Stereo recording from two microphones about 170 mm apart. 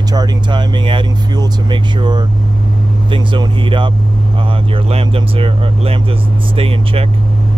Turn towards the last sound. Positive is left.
turn(degrees=-35)  # may be behind; listen again after turning